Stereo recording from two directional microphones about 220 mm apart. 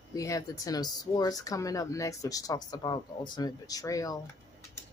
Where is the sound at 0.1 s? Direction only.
15° left (ahead or behind).